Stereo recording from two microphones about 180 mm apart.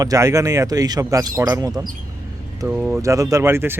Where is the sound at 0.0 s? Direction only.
20° right (ahead or behind).